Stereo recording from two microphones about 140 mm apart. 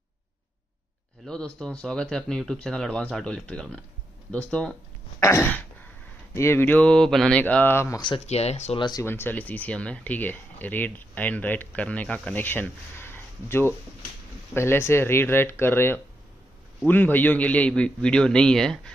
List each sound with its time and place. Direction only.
1.2 s speech: 5° left (ahead or behind)
5.2 s throat clearing: 20° left (ahead or behind)
6.3 s speech: 15° left (ahead or behind)
8.3 s speech: 50° left (ahead or behind)
8.7 s speech: 35° left (ahead or behind)
9.0 s speech: 15° left (ahead or behind)